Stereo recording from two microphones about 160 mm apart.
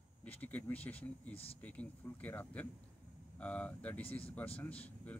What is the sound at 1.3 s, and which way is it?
Speech, 35° left (ahead or behind).